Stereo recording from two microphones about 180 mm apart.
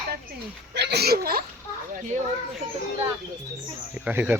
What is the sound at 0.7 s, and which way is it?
Speech, 65° right (ahead or behind).